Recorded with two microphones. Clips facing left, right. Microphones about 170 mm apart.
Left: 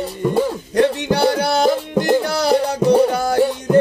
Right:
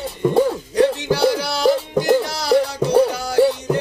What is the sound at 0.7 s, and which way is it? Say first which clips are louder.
Music: left 3 dB; 60° left (ahead or behind).